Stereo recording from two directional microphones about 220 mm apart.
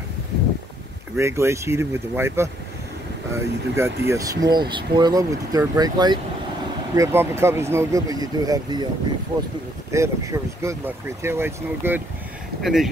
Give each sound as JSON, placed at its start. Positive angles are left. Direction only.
{"t": 1.1, "sound": "speech", "side_deg": -10}
{"t": 9.8, "sound": "speech", "side_deg": -15}